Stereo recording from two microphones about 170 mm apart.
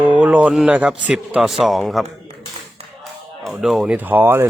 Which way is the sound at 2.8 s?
40° right (ahead or behind).